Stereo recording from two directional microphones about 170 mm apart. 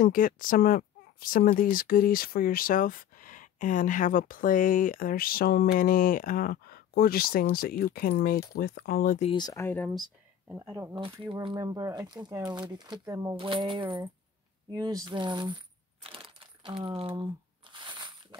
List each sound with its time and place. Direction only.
0.0 s speech: 55° left (ahead or behind)
9.3 s speech: 20° left (ahead or behind)
10.5 s speech: 15° right (ahead or behind)
17.7 s a sound: 30° right (ahead or behind)